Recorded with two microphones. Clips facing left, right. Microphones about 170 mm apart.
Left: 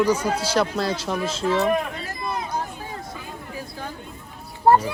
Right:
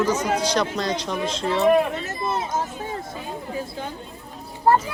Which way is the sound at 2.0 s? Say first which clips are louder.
Right 3 dB; 25° right (ahead or behind).